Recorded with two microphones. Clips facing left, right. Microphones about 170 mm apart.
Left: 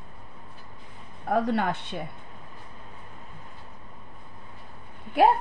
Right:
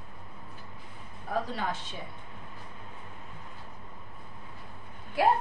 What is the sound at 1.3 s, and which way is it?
Speech, 60° left (ahead or behind).